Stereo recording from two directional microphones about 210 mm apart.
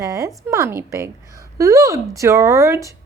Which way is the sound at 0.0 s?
15° right (ahead or behind).